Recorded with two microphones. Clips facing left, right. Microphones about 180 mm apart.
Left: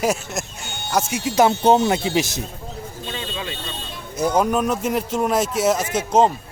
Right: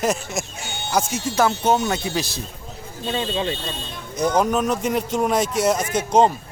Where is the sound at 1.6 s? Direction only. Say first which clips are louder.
Left 4 dB; 30° left (ahead or behind).